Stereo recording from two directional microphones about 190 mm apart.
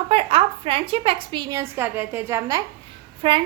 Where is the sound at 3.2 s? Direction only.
25° right (ahead or behind).